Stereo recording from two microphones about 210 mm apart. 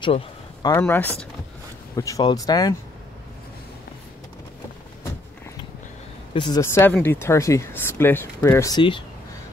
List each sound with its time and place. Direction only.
0.0 s a sound: 25° left (ahead or behind)
0.7 s speech: 10° left (ahead or behind)
6.3 s speech: 20° left (ahead or behind)